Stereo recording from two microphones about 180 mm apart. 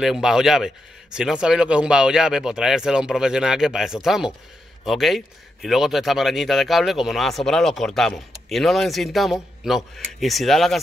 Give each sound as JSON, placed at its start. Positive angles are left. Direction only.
{"t": 0.0, "sound": "a man's voice", "side_deg": -5}